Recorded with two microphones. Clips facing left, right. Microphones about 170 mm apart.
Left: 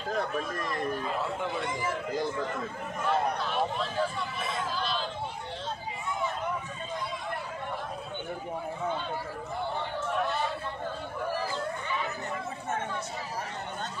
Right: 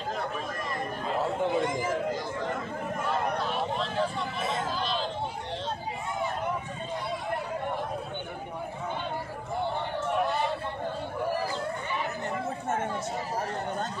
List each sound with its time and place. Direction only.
1.2 s speech: 30° right (ahead or behind)
1.6 s a man's voice: 45° right (ahead or behind)